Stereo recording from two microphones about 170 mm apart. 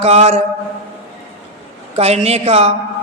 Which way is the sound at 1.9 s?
40° right (ahead or behind).